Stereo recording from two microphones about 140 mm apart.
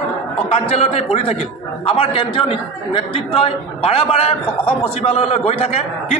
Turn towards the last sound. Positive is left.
turn(degrees=45)  # may be behind; listen again after turning